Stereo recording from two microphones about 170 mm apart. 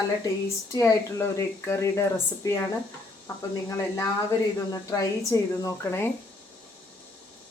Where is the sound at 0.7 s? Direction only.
15° left (ahead or behind).